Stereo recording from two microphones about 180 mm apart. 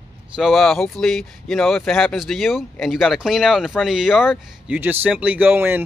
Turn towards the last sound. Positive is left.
turn(degrees=-10)  # may be behind; listen again after turning